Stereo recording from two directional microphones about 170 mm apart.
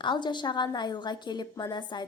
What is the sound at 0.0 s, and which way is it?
Speech, 25° left (ahead or behind).